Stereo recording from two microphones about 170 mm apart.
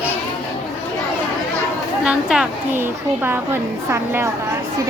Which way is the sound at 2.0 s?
5° right (ahead or behind).